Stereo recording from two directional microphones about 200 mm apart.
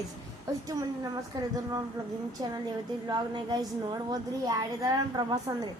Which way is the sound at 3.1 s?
20° right (ahead or behind).